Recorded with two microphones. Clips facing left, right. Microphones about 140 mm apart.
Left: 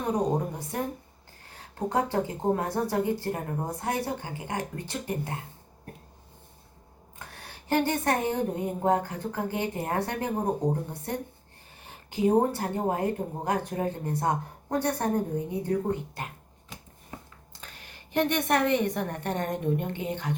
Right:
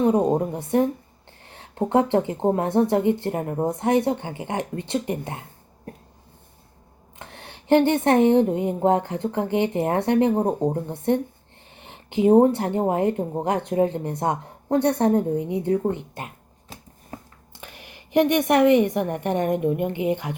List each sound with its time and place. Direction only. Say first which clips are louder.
0.0 s speech: right 8 dB; 25° right (ahead or behind)
7.2 s speech: right 4 dB; 25° right (ahead or behind)
17.6 s a woman's voice: right 6 dB; 15° right (ahead or behind)